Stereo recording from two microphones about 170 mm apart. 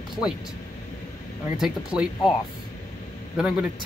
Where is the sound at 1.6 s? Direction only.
5° right (ahead or behind).